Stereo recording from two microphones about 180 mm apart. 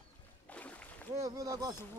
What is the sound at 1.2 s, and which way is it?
Speech, 20° right (ahead or behind).